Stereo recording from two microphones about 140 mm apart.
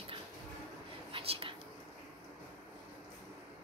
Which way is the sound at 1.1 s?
40° right (ahead or behind).